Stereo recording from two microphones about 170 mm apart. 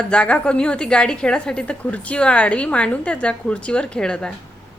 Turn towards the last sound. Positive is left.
turn(degrees=5)  # may be behind; listen again after turning